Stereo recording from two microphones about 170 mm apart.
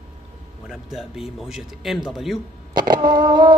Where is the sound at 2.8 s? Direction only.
25° right (ahead or behind).